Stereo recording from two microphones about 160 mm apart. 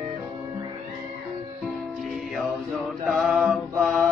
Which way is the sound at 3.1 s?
Centre (ahead or behind).